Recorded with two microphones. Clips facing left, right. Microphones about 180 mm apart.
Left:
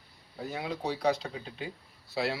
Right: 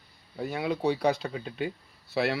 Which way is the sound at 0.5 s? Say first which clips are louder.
Right 7 dB; 65° right (ahead or behind).